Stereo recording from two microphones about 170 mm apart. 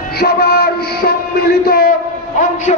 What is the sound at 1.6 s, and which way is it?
Speech, 60° left (ahead or behind).